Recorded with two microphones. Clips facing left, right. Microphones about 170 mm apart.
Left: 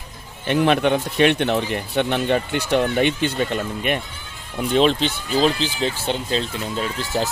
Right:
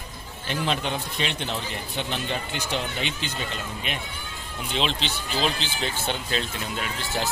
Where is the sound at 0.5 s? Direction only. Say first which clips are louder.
Left 10 dB; 60° left (ahead or behind).